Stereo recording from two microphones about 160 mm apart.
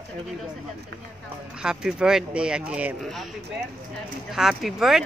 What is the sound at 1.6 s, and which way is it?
Speech, 5° right (ahead or behind).